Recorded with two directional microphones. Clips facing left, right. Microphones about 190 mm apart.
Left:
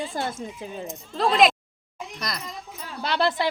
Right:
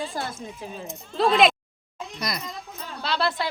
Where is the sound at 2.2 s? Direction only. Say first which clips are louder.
Right 2 dB; 10° right (ahead or behind).